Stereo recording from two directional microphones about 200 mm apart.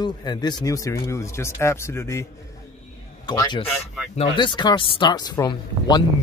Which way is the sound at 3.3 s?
20° left (ahead or behind).